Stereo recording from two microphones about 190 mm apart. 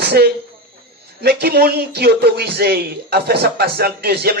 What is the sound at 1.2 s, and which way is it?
A man's voice, 55° right (ahead or behind).